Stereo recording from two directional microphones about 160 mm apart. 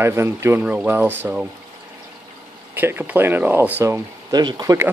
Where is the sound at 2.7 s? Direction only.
15° right (ahead or behind).